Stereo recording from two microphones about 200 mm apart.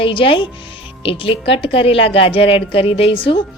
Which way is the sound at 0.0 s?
25° left (ahead or behind).